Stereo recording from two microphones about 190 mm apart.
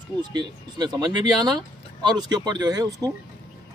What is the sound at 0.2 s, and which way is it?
Speech, 20° right (ahead or behind).